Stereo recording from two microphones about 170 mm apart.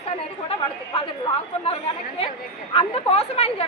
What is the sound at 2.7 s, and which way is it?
Speech, 35° left (ahead or behind).